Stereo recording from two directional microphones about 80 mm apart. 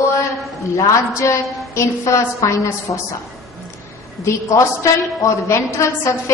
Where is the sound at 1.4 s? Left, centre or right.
Centre.